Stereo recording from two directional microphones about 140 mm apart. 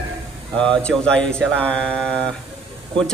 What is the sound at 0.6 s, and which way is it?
A man's voice, 5° left (ahead or behind).